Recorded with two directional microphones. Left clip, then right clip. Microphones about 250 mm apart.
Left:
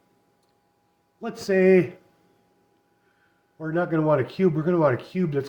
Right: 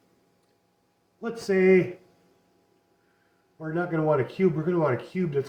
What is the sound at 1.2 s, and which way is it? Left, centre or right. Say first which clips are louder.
Speech: left 2 dB; left.